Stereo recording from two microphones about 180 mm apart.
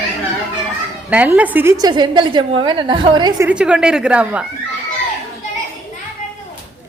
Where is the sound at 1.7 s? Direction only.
25° right (ahead or behind).